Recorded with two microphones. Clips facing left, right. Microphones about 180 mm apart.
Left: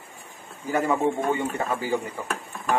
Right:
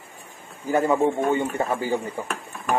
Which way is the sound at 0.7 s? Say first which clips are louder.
Right 3 dB; 25° right (ahead or behind).